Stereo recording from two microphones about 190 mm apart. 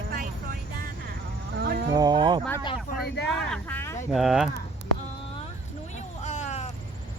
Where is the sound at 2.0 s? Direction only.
25° right (ahead or behind).